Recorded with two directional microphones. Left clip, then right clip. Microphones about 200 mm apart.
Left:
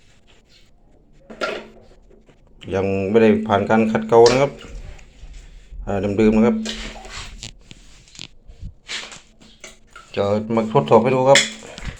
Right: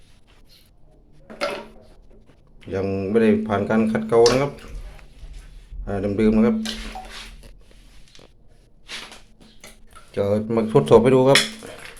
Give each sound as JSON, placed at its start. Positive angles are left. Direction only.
{"t": 2.6, "sound": "speech", "side_deg": 5}
{"t": 5.8, "sound": "speech", "side_deg": 0}
{"t": 10.1, "sound": "a sound", "side_deg": -10}
{"t": 10.3, "sound": "speech", "side_deg": -30}